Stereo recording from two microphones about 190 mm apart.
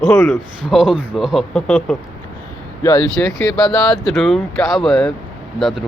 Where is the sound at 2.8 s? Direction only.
15° left (ahead or behind).